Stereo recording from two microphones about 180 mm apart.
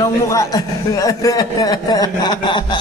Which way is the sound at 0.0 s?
15° left (ahead or behind).